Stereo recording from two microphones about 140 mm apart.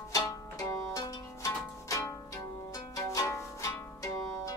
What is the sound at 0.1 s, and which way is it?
Zither, 25° left (ahead or behind).